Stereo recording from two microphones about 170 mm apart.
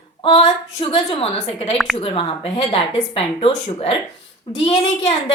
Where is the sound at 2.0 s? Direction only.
35° left (ahead or behind).